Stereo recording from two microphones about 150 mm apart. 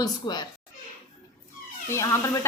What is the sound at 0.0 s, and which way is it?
Speech, 25° left (ahead or behind).